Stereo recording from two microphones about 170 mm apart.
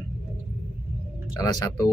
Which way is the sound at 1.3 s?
25° left (ahead or behind).